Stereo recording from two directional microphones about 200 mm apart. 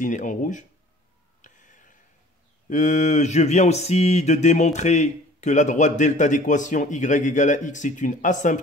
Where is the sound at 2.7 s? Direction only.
35° left (ahead or behind).